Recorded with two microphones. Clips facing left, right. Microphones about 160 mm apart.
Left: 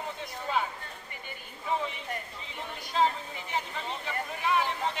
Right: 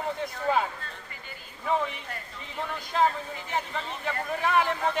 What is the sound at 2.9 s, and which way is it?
Speech, 55° right (ahead or behind).